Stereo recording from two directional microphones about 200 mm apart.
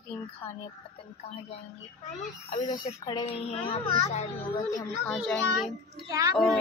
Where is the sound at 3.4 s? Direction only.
30° left (ahead or behind).